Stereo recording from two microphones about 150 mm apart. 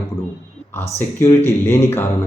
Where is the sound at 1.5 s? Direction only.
15° left (ahead or behind).